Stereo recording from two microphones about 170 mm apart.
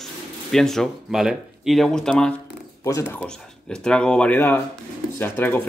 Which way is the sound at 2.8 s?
15° left (ahead or behind).